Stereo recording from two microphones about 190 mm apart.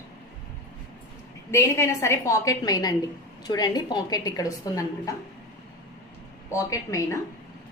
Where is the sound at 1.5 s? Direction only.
15° left (ahead or behind).